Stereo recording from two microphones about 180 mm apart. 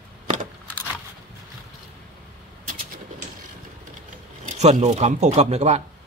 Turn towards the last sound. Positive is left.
turn(degrees=-40)  # may be behind; listen again after turning